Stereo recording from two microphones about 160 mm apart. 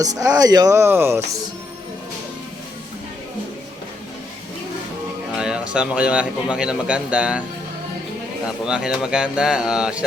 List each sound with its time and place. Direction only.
0.0 s speech: 20° right (ahead or behind)
5.4 s a man's voice: 5° right (ahead or behind)
8.6 s speech: 5° right (ahead or behind)